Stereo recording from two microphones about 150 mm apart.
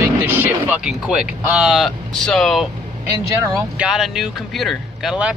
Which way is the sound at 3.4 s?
20° right (ahead or behind).